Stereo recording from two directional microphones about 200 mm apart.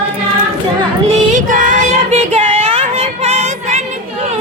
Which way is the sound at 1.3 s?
40° right (ahead or behind).